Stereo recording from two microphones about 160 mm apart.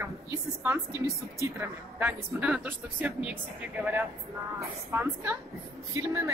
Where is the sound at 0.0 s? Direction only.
15° right (ahead or behind).